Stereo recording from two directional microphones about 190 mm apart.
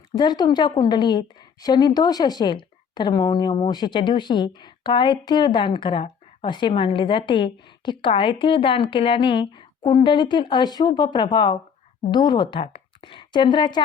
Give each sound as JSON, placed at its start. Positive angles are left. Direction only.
{"t": 0.2, "sound": "a woman's voice", "side_deg": 20}